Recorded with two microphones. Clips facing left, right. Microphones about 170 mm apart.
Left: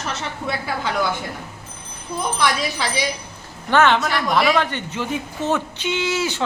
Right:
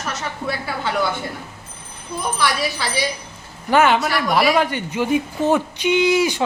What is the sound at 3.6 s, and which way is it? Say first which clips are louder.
Speech: right 1 dB; 10° right (ahead or behind).